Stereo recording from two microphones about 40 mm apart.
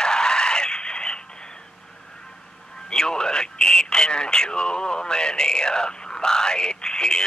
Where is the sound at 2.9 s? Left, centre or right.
Centre.